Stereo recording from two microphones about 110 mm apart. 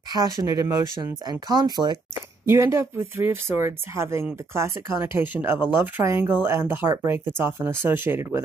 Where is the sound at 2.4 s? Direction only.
25° right (ahead or behind).